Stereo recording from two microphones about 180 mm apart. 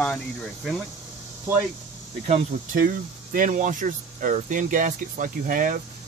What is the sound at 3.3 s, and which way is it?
Speech, 45° right (ahead or behind).